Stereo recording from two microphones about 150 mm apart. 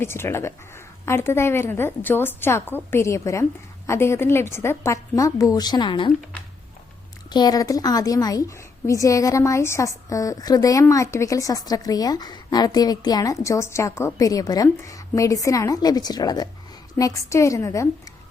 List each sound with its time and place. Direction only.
0.0 s a woman's voice: 15° left (ahead or behind); by 6.1 s 30° left (ahead or behind)
7.3 s a woman's voice: 30° left (ahead or behind)